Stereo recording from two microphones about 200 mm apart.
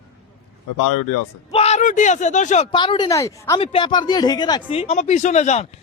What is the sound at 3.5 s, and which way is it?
Speech, 25° left (ahead or behind).